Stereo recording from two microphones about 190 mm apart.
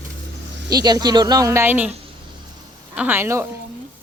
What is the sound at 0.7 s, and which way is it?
Speech, 20° right (ahead or behind).